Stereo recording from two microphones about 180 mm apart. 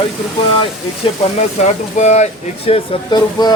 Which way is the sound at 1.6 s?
40° left (ahead or behind).